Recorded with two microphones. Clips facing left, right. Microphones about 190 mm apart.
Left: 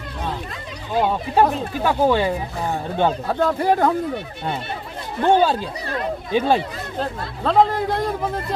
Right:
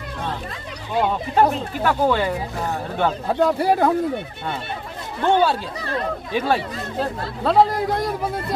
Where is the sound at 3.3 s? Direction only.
10° right (ahead or behind).